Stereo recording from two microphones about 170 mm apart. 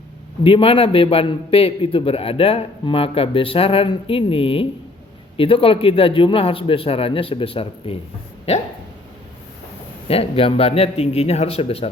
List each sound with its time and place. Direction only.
0.4 s a man's voice: 30° left (ahead or behind)
10.1 s a man's voice: 35° left (ahead or behind)